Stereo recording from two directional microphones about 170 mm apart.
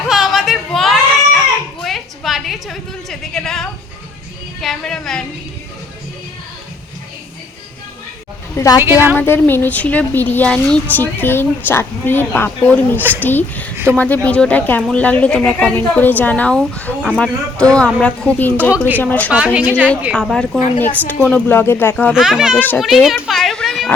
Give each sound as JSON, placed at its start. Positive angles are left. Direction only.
{"t": 0.1, "sound": "a sound", "side_deg": 0}
{"t": 4.6, "sound": "a woman's voice", "side_deg": 5}
{"t": 8.5, "sound": "a woman's voice", "side_deg": 20}
{"t": 8.8, "sound": "a woman's voice", "side_deg": -10}
{"t": 9.1, "sound": "a woman's voice", "side_deg": 15}
{"t": 13.0, "sound": "a woman's voice", "side_deg": -10}
{"t": 13.2, "sound": "a woman's voice", "side_deg": 10}
{"t": 19.5, "sound": "a woman's voice", "side_deg": -10}
{"t": 20.8, "sound": "a woman's voice", "side_deg": 10}
{"t": 22.1, "sound": "a woman's voice", "side_deg": -5}
{"t": 22.5, "sound": "a woman's voice", "side_deg": 10}
{"t": 22.8, "sound": "children playing", "side_deg": 0}